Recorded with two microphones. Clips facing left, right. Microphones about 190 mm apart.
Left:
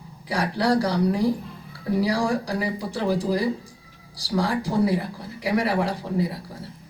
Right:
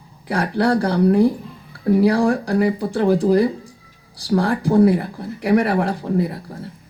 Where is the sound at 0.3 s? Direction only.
55° right (ahead or behind).